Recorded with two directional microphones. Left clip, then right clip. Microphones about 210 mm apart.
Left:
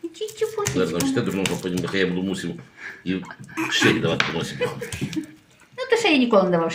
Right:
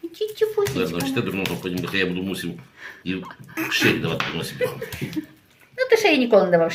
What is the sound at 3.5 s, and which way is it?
Speech, 40° right (ahead or behind).